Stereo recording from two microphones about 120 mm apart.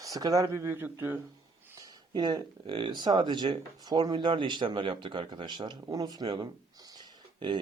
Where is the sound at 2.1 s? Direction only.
35° right (ahead or behind).